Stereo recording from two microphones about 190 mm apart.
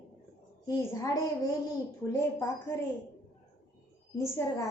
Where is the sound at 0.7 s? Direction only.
15° left (ahead or behind).